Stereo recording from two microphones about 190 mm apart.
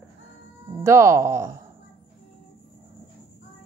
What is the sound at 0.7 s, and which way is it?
Speech, 15° right (ahead or behind).